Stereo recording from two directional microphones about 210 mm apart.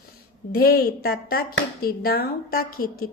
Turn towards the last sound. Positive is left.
turn(degrees=45)  # may be behind; listen again after turning